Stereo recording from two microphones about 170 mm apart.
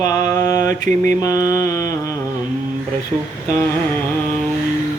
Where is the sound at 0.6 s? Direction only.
45° right (ahead or behind).